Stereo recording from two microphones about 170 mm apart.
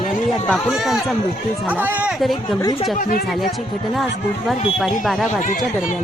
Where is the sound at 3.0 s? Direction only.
55° left (ahead or behind).